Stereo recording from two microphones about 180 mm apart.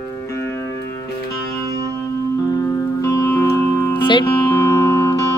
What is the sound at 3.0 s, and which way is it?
Music, 15° left (ahead or behind).